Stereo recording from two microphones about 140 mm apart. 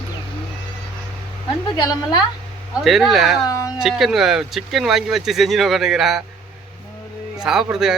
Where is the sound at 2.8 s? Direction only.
Centre (ahead or behind).